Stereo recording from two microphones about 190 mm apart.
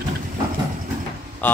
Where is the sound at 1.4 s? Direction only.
10° left (ahead or behind).